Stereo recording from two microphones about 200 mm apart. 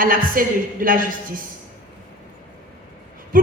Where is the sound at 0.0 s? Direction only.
45° right (ahead or behind).